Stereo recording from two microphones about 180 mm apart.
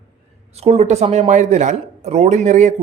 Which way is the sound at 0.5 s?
35° right (ahead or behind).